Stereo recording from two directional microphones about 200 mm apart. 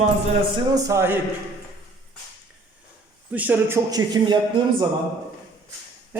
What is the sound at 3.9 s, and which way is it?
Speech, 20° right (ahead or behind).